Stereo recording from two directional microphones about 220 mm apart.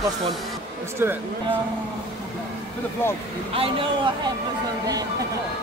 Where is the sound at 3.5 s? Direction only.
25° right (ahead or behind).